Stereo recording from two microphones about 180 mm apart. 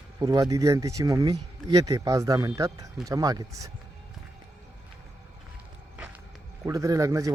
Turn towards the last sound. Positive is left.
turn(degrees=-15)  # may be behind; listen again after turning